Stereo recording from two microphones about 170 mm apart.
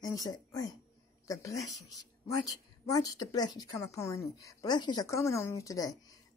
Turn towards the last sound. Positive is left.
turn(degrees=20)  # may be behind; listen again after turning